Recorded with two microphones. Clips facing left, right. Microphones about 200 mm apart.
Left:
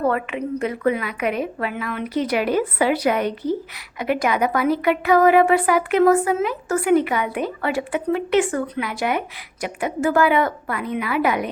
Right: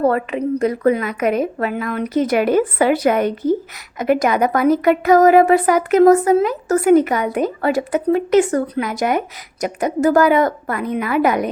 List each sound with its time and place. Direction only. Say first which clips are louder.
0.0 s a woman's voice: right 5 dB; 35° right (ahead or behind)